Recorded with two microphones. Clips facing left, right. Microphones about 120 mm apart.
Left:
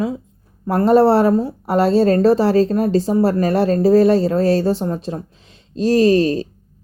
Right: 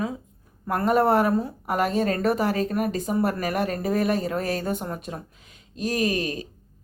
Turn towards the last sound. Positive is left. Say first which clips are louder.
# left 12 dB
turn(degrees=35)  # may be behind; listen again after turning